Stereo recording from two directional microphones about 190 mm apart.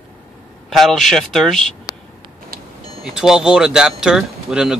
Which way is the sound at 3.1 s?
5° right (ahead or behind).